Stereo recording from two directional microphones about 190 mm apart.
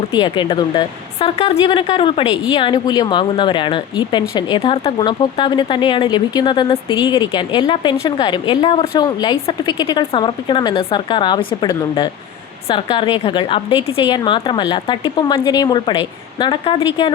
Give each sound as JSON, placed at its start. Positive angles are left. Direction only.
{"t": 0.1, "sound": "speech", "side_deg": 25}